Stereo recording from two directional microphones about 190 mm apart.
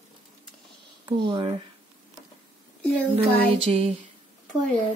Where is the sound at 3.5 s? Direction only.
30° right (ahead or behind).